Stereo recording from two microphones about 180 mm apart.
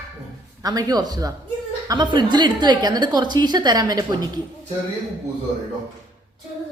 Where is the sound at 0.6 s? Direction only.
20° right (ahead or behind).